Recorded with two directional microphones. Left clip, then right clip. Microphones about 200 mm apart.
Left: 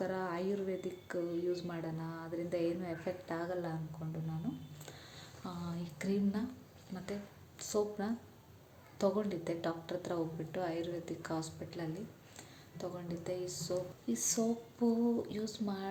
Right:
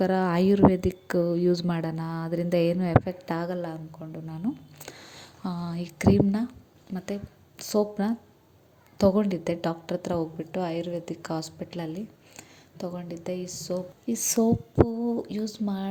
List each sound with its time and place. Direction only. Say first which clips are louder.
0.0 s a woman's voice: right 13 dB; 45° right (ahead or behind)
7.6 s a woman's voice: right 9 dB; 35° right (ahead or behind)